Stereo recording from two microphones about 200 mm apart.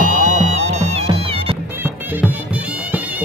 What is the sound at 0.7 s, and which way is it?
Music, 35° right (ahead or behind).